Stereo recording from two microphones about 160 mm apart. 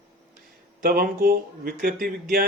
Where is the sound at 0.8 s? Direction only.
65° right (ahead or behind).